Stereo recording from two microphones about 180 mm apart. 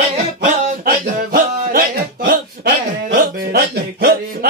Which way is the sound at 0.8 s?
50° right (ahead or behind).